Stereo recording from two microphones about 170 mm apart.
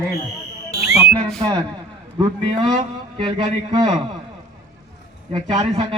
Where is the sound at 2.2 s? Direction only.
25° right (ahead or behind).